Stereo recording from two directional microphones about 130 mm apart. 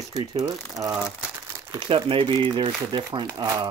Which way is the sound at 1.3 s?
20° right (ahead or behind).